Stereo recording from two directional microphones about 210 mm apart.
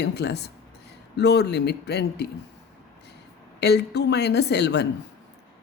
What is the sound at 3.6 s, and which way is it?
A woman's voice, 55° left (ahead or behind).